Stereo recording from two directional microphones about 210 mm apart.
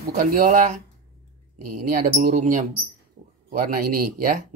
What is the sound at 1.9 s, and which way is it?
Speech, 40° right (ahead or behind).